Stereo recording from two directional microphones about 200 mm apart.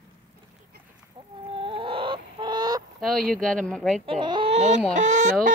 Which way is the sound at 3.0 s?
Centre (ahead or behind).